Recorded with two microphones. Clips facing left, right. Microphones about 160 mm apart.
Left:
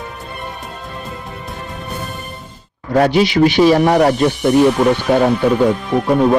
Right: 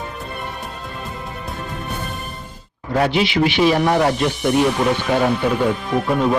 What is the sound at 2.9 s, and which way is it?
Speech, 40° left (ahead or behind).